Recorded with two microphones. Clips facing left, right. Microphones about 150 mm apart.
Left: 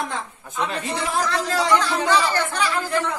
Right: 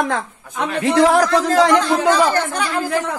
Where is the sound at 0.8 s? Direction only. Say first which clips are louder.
Right 16 dB; 85° right.